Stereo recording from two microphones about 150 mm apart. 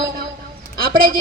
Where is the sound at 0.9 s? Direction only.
70° right (ahead or behind).